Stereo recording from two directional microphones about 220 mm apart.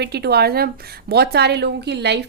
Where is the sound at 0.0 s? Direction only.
45° right (ahead or behind).